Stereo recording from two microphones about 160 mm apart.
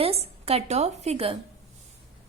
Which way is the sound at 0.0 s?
40° right (ahead or behind).